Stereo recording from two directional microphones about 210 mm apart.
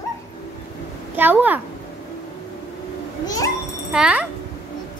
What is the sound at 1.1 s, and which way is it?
Speech, 10° right (ahead or behind).